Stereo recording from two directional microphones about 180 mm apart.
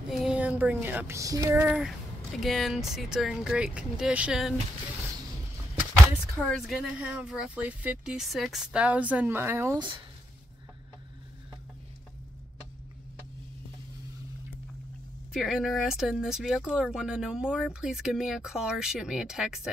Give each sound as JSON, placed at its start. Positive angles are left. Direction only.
{"t": 0.1, "sound": "speech", "side_deg": -5}
{"t": 2.4, "sound": "speech", "side_deg": 0}
{"t": 6.3, "sound": "speech", "side_deg": 0}
{"t": 9.8, "sound": "speech", "side_deg": -25}
{"t": 15.3, "sound": "speech", "side_deg": 0}